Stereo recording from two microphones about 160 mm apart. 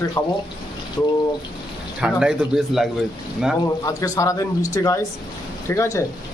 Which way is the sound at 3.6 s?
20° left (ahead or behind).